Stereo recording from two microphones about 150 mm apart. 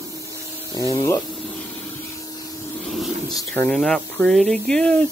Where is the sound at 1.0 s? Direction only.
20° left (ahead or behind).